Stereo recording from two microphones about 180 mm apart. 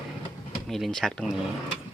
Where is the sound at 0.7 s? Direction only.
Centre (ahead or behind).